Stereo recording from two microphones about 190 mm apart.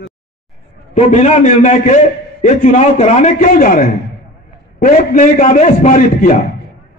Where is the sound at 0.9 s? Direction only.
40° left (ahead or behind).